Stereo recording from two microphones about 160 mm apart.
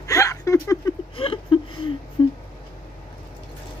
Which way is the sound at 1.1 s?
35° left (ahead or behind).